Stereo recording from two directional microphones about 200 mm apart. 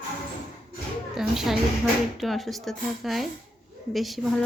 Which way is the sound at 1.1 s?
Centre (ahead or behind).